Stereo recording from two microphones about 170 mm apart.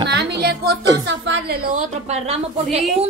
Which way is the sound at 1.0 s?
90° right.